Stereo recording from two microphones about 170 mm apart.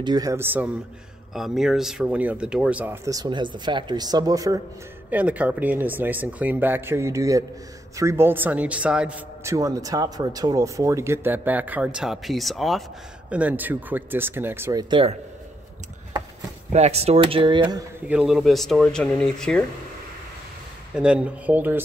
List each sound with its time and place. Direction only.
0.0 s speech: 20° right (ahead or behind)
1.3 s a man's voice: centre (ahead or behind); by 4.6 s 20° right (ahead or behind)
5.1 s a man's voice: 10° right (ahead or behind); by 15.1 s 30° right (ahead or behind)
16.7 s speech: 40° right (ahead or behind)
18.0 s speech: 5° right (ahead or behind)
20.9 s a man's voice: 5° right (ahead or behind)